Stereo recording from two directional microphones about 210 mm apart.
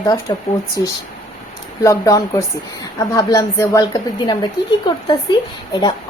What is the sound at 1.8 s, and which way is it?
A woman's voice, 15° left (ahead or behind).